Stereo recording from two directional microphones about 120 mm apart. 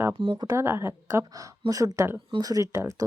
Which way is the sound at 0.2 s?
45° right (ahead or behind).